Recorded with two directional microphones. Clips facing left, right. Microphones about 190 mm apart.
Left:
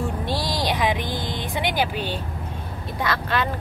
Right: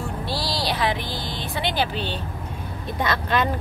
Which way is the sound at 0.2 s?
20° left (ahead or behind).